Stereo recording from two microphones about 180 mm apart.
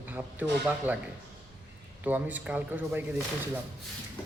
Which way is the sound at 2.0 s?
10° right (ahead or behind).